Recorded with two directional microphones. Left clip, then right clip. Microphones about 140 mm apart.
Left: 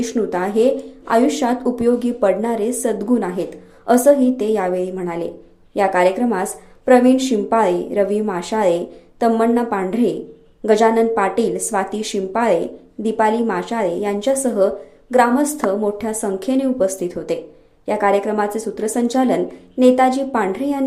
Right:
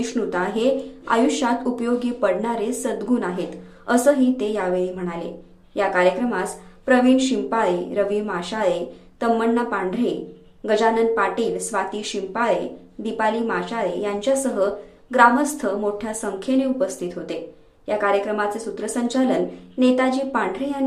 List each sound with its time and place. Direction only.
0.0 s a woman's voice: 30° left (ahead or behind)